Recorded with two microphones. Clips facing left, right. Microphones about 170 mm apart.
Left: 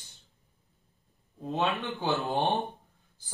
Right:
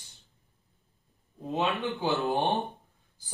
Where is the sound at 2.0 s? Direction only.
20° right (ahead or behind).